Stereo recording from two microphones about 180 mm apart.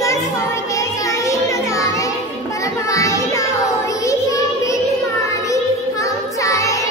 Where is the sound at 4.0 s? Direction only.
15° left (ahead or behind).